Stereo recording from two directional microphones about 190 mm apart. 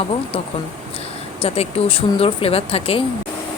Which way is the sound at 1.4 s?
30° left (ahead or behind).